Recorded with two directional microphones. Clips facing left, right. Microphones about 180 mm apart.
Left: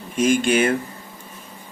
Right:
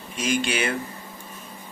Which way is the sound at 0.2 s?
50° left (ahead or behind).